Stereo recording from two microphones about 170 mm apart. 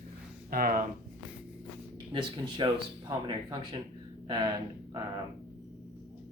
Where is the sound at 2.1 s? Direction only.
30° right (ahead or behind).